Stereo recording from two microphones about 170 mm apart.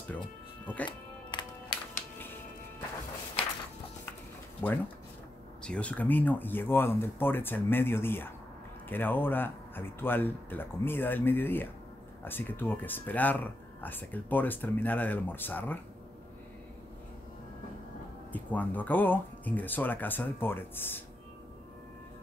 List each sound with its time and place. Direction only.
0.8 s music: 25° left (ahead or behind)
4.6 s speech: 10° left (ahead or behind)
18.3 s speech: 10° left (ahead or behind)